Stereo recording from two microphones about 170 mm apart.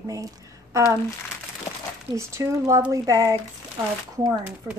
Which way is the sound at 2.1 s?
15° right (ahead or behind).